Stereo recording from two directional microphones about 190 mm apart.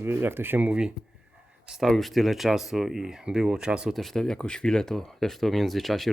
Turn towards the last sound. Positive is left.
turn(degrees=0)  # may be behind; listen again after turning